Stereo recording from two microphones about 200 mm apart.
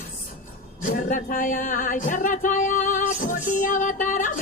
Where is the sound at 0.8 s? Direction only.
40° left (ahead or behind).